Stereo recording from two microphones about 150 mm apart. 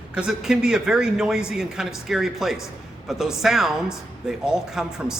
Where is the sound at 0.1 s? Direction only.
5° right (ahead or behind).